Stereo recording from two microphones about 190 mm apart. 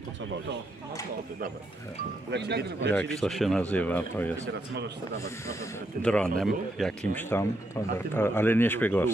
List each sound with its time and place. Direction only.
2.3 s speech: 60° right (ahead or behind)
2.9 s speech: 5° left (ahead or behind)
4.5 s speech: 60° right (ahead or behind)
5.2 s speech: 15° left (ahead or behind)
7.2 s speech: 10° left (ahead or behind)